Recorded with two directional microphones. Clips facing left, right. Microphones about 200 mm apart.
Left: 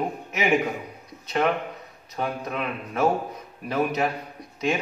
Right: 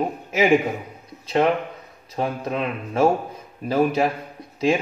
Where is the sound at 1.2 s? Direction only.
30° right (ahead or behind).